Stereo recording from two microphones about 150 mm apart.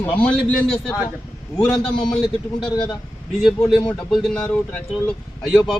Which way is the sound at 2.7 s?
25° left (ahead or behind).